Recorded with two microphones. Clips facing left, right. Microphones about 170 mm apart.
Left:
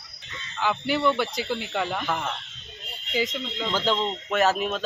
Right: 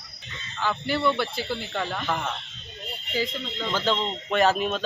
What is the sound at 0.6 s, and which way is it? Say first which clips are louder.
Speech: left 1 dB; 10° left (ahead or behind).